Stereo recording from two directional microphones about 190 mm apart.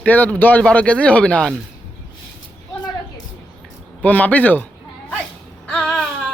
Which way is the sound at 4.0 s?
10° left (ahead or behind).